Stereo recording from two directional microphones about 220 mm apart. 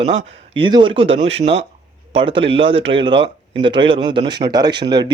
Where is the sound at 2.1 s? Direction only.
25° right (ahead or behind).